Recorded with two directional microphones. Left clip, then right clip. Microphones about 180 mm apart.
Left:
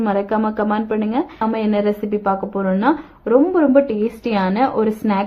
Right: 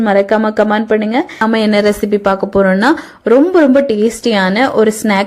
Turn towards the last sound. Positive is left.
turn(degrees=-25)  # may be behind; listen again after turning